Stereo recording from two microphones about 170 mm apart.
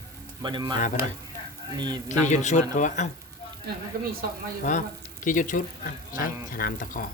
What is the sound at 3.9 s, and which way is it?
Speech, 65° right (ahead or behind).